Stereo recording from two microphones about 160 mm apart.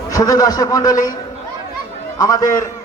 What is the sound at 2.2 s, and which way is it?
Speech, 25° left (ahead or behind).